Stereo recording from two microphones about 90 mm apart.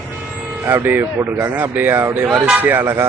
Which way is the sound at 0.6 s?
20° right (ahead or behind).